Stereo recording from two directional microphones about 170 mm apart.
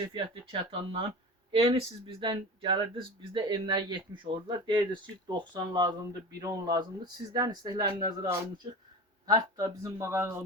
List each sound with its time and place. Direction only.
0.1 s speech: 30° right (ahead or behind); by 10.4 s 15° right (ahead or behind)